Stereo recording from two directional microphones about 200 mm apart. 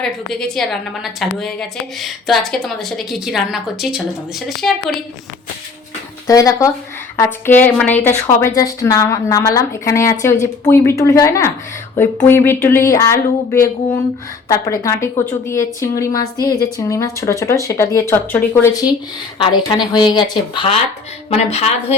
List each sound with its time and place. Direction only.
0.0 s a woman's voice: 5° left (ahead or behind)
6.2 s a woman's voice: 15° left (ahead or behind); by 21.9 s 30° left (ahead or behind)